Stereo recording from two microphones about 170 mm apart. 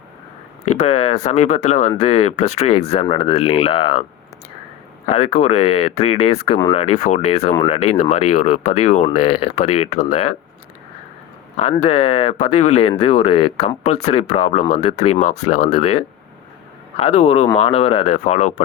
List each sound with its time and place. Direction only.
0.7 s speech: 40° left (ahead or behind)
5.0 s speech: 35° left (ahead or behind)
11.5 s speech: 35° left (ahead or behind)